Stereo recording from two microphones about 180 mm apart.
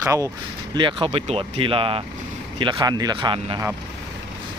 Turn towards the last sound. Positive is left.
turn(degrees=-30)  # may be behind; listen again after turning